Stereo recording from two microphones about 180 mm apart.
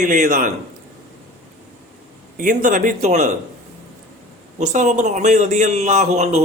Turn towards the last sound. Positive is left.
turn(degrees=-40)  # may be behind; listen again after turning